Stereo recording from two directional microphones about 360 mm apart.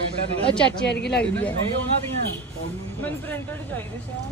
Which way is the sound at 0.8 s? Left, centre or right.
Left.